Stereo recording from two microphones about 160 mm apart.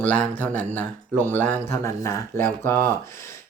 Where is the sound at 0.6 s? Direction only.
10° left (ahead or behind).